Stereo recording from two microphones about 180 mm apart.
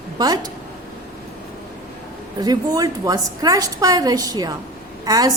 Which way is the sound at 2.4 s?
20° right (ahead or behind).